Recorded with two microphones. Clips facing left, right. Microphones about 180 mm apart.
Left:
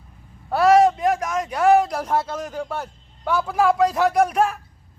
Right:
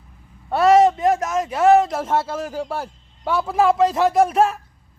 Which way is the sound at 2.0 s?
25° right (ahead or behind).